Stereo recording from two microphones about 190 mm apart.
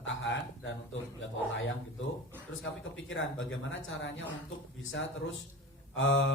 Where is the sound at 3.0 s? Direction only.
85° left.